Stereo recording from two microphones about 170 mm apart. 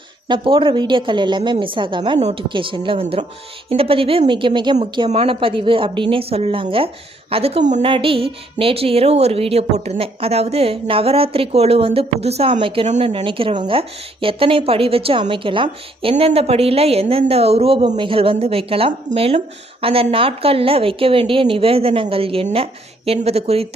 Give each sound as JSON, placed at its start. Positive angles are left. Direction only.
{"t": 0.3, "sound": "a woman's voice", "side_deg": -30}
{"t": 2.1, "sound": "a woman's voice", "side_deg": -40}
{"t": 2.5, "sound": "a woman's voice", "side_deg": -30}